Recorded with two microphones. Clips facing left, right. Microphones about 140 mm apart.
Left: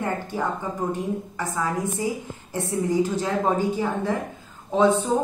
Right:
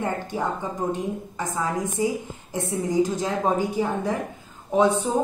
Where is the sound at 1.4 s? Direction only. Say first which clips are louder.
Right 1 dB; 20° right (ahead or behind).